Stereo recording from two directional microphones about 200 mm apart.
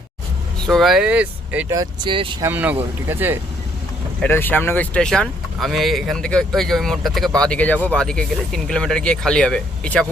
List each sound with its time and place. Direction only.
0.7 s speech: centre (ahead or behind)
1.7 s speech: 20° right (ahead or behind)
2.4 s speech: 10° right (ahead or behind)
4.2 s speech: 10° left (ahead or behind)